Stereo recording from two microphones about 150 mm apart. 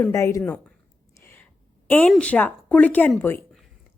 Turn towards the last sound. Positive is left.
turn(degrees=15)  # may be behind; listen again after turning